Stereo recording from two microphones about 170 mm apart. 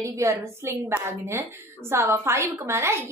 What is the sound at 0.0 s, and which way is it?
A woman's voice, 15° right (ahead or behind).